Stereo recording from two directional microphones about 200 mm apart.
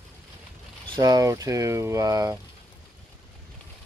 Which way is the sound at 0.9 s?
20° right (ahead or behind).